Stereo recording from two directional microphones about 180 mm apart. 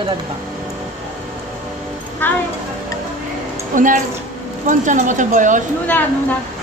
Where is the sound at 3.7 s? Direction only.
45° right (ahead or behind).